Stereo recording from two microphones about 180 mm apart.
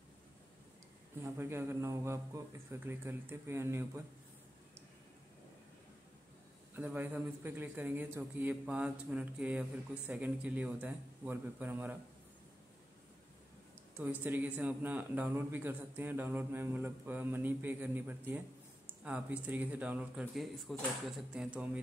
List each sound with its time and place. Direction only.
1.2 s a man's voice: 15° right (ahead or behind)
6.7 s a man's voice: 10° right (ahead or behind)
14.2 s a man's voice: 10° right (ahead or behind)